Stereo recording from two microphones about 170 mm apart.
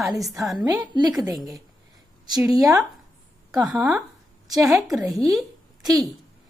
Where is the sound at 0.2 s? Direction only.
Centre (ahead or behind).